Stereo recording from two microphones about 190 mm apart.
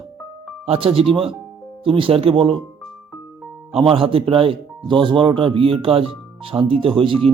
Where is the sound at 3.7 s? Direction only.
30° right (ahead or behind).